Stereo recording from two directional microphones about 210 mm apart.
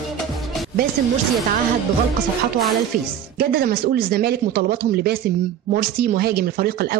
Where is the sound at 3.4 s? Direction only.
45° right (ahead or behind).